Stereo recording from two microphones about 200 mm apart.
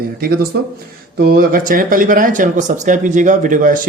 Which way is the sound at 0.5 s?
55° right (ahead or behind).